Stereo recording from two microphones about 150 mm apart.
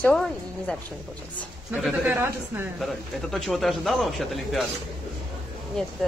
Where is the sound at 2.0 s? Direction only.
15° right (ahead or behind).